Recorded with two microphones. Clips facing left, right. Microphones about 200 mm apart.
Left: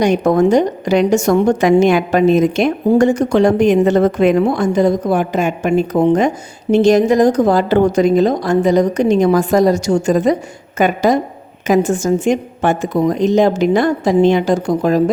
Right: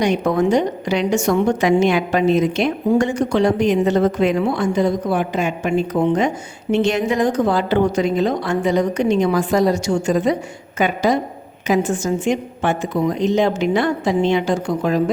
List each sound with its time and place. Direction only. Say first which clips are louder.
0.0 s a woman's voice: left 5 dB; 45° left (ahead or behind)